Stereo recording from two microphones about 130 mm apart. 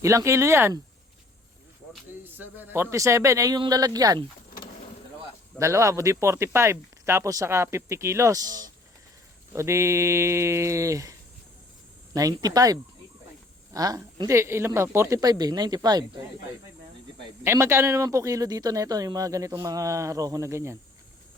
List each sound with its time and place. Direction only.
0.0 s speech: 25° right (ahead or behind)
2.4 s speech: 15° right (ahead or behind)
5.5 s speech: 25° right (ahead or behind)
12.1 s speech: 30° right (ahead or behind)
17.4 s speech: 20° right (ahead or behind)